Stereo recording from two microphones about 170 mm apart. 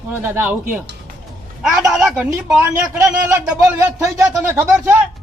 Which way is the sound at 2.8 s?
15° right (ahead or behind).